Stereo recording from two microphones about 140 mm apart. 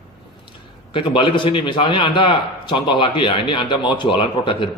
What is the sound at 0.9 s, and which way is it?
A man's voice, 35° left (ahead or behind).